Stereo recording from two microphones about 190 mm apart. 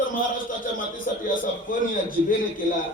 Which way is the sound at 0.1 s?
45° left (ahead or behind).